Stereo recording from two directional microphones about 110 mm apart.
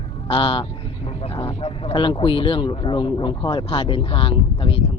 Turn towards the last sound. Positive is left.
turn(degrees=55)  # may be behind; listen again after turning